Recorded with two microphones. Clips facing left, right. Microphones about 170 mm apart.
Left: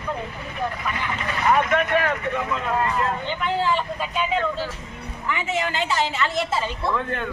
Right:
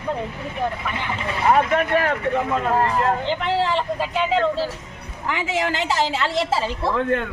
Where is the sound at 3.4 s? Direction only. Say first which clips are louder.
Even; 80° right.